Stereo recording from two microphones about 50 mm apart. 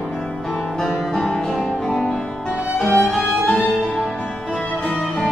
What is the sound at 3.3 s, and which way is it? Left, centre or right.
Music, centre.